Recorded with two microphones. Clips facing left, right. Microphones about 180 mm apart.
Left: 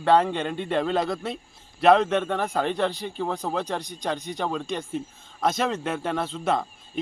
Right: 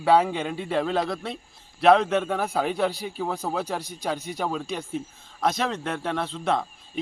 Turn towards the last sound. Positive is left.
turn(degrees=0)  # may be behind; listen again after turning